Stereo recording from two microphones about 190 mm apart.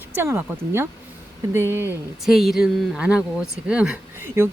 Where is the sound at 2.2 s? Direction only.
Centre (ahead or behind).